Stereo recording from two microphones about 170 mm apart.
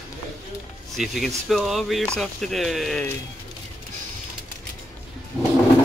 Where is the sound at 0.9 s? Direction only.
Centre (ahead or behind).